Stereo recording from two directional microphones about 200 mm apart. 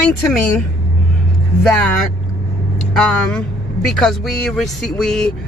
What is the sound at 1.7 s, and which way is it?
Speech, 5° left (ahead or behind).